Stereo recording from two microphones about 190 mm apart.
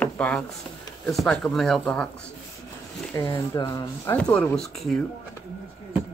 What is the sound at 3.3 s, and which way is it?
Speech, 25° left (ahead or behind).